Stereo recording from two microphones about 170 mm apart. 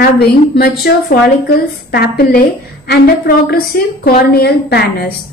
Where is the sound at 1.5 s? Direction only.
65° left (ahead or behind).